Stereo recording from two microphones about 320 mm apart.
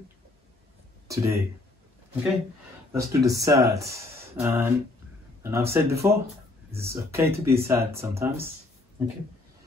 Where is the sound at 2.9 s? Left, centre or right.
Centre.